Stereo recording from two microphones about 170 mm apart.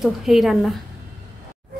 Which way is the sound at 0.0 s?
Centre (ahead or behind).